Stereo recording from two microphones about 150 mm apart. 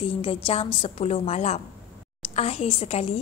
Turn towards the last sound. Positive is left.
turn(degrees=40)  # may be behind; listen again after turning